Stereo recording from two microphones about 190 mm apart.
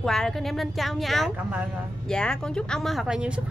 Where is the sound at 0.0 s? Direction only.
Centre (ahead or behind).